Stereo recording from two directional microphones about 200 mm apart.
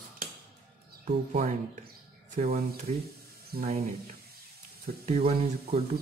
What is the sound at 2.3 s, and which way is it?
Speech, 35° right (ahead or behind).